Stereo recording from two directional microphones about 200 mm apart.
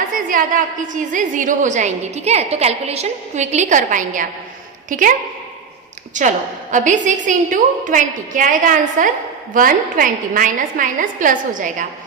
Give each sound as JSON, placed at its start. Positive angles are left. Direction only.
{"t": 0.1, "sound": "a woman's voice", "side_deg": -45}
{"t": 6.1, "sound": "a woman's voice", "side_deg": -40}